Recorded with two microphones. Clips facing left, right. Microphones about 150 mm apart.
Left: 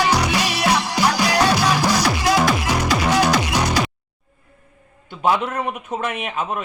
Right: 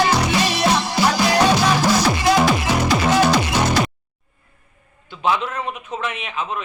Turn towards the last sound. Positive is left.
turn(degrees=50)  # may be behind; listen again after turning